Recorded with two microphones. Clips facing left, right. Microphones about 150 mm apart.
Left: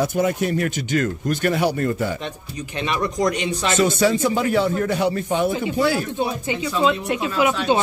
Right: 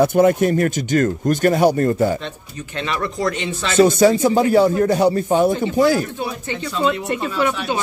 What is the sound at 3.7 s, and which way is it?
Speech, 35° right (ahead or behind).